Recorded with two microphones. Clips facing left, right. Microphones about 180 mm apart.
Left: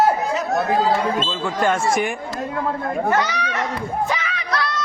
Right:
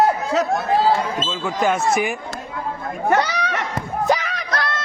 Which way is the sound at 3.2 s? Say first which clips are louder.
Right 1 dB; 35° right (ahead or behind).